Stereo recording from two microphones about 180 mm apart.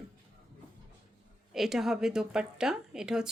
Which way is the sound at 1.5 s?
Centre (ahead or behind).